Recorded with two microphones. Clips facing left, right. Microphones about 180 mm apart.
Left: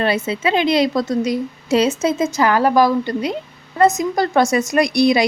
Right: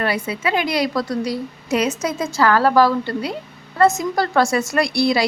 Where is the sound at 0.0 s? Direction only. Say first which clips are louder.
Left 3 dB; 25° left (ahead or behind).